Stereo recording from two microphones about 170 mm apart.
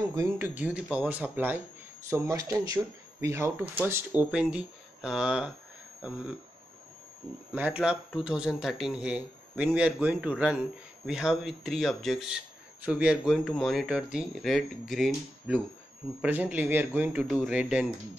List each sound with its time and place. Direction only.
0.1 s speech: 20° right (ahead or behind)
0.6 s speech: 5° right (ahead or behind)
7.5 s speech: 10° right (ahead or behind)